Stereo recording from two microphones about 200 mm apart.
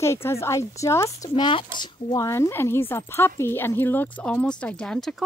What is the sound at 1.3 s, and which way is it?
Speech, 25° left (ahead or behind).